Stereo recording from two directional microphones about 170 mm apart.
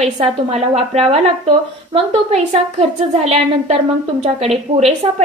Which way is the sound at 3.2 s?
35° right (ahead or behind).